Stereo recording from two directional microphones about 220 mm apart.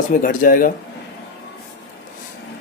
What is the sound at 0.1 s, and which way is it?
Speech, 40° left (ahead or behind).